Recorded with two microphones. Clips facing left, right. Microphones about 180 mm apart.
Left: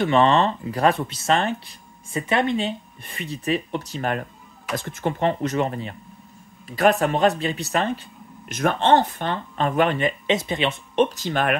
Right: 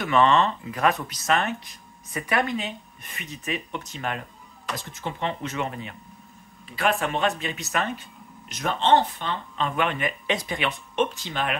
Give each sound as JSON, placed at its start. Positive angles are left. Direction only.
{"t": 0.0, "sound": "speech", "side_deg": 30}
{"t": 8.5, "sound": "speech", "side_deg": 50}
{"t": 11.1, "sound": "speech", "side_deg": 50}